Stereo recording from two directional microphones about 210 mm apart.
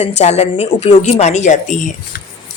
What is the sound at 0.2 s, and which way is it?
A woman's voice, 30° left (ahead or behind).